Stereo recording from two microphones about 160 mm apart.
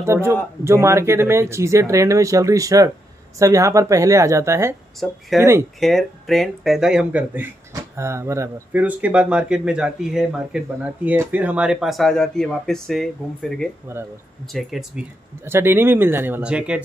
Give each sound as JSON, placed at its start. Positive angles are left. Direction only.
{"t": 0.0, "sound": "a woman's voice", "side_deg": -15}
{"t": 5.0, "sound": "speech", "side_deg": 0}
{"t": 5.4, "sound": "speech", "side_deg": -15}
{"t": 5.8, "sound": "speech", "side_deg": 0}
{"t": 13.9, "sound": "speech", "side_deg": -15}
{"t": 14.5, "sound": "speech", "side_deg": 0}
{"t": 15.4, "sound": "speech", "side_deg": -15}